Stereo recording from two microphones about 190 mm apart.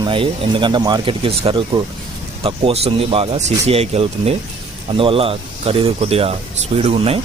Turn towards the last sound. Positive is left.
turn(degrees=-30)  # may be behind; listen again after turning